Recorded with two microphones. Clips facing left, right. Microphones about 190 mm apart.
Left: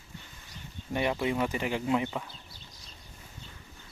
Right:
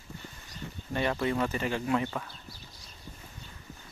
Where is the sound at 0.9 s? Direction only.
15° left (ahead or behind).